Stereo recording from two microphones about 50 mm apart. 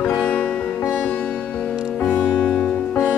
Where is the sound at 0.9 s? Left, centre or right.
Left.